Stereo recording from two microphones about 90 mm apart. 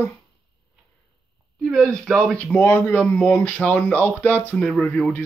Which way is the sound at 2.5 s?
25° left (ahead or behind).